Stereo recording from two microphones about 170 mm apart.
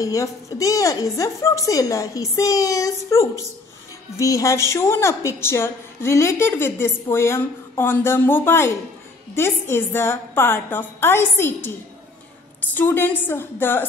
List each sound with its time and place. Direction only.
0.0 s a woman's voice: 20° left (ahead or behind)
12.7 s a woman's voice: 10° left (ahead or behind)